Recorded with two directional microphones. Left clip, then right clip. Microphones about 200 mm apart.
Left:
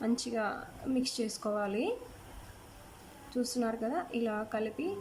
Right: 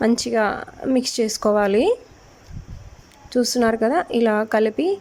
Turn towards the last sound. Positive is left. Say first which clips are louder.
# right 16 dB
turn(degrees=-40)  # may be behind; listen again after turning